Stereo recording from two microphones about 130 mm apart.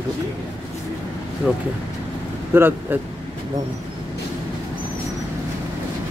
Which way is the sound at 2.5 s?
15° right (ahead or behind).